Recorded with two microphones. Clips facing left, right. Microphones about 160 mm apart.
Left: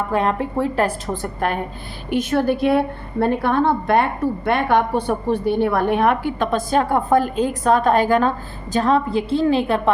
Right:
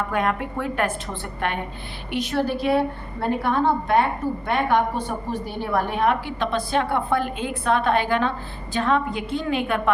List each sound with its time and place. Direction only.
0.1 s a woman's voice: 30° left (ahead or behind)